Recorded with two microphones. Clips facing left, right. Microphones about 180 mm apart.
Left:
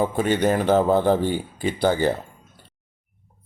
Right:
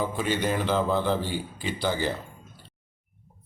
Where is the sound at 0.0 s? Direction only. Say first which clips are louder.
Left 6 dB; 50° left (ahead or behind).